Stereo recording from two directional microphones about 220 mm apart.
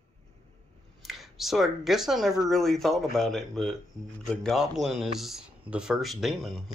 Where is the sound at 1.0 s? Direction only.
Centre (ahead or behind).